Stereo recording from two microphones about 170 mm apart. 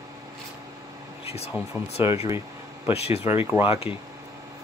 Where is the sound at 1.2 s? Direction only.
35° left (ahead or behind).